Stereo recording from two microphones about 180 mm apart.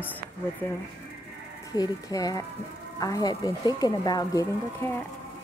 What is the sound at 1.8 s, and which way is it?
Speech, 20° left (ahead or behind).